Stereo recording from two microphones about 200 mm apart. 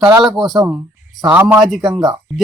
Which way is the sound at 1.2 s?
10° right (ahead or behind).